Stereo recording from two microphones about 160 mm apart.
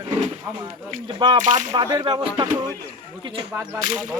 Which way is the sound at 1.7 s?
25° right (ahead or behind).